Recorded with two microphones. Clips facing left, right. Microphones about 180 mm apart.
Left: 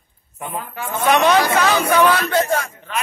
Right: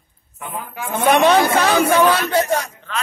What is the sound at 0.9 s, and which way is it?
Speech, 55° right (ahead or behind).